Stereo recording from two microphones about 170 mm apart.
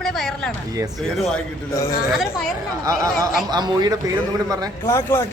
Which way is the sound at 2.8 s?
20° right (ahead or behind).